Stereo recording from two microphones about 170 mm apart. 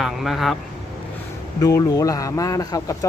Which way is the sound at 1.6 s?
20° left (ahead or behind).